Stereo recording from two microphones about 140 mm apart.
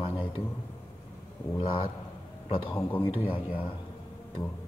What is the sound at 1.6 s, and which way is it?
Speech, 35° left (ahead or behind).